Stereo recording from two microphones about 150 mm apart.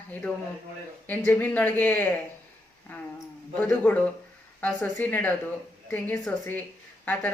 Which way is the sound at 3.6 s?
10° left (ahead or behind).